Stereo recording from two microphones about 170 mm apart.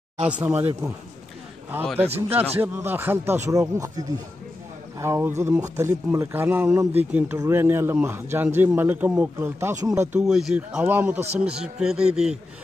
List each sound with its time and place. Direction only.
0.3 s speech: 10° right (ahead or behind)
2.2 s a man's voice: 15° right (ahead or behind)
10.2 s a man's voice: 5° right (ahead or behind)